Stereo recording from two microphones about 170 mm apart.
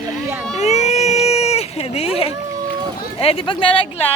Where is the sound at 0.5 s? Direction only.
40° left (ahead or behind).